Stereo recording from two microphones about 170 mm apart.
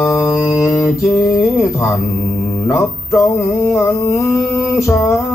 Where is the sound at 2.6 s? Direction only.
20° left (ahead or behind).